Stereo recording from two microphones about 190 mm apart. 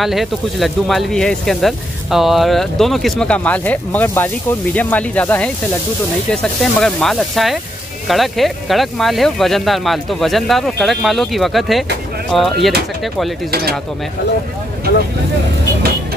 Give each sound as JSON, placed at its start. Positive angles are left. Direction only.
{"t": 0.0, "sound": "speech", "side_deg": 0}
{"t": 13.5, "sound": "speech", "side_deg": -55}